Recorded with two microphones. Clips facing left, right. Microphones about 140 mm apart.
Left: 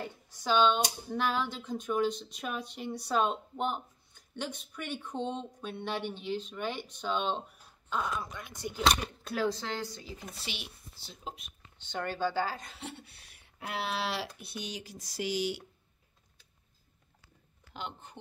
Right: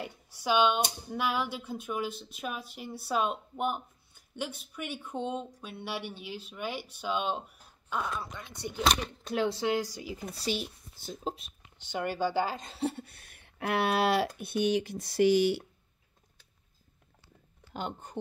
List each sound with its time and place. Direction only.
0.0 s speech: 10° right (ahead or behind)
9.0 s speech: centre (ahead or behind)
10.4 s speech: 40° right (ahead or behind)
11.6 s speech: 10° right (ahead or behind)
12.7 s speech: 40° right (ahead or behind); by 15.6 s 55° right (ahead or behind)
17.7 s speech: 45° right (ahead or behind)